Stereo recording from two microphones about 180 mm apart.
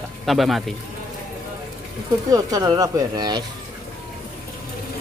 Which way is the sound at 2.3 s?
20° right (ahead or behind).